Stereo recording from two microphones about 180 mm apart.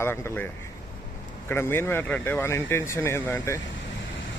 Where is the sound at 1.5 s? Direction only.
15° left (ahead or behind).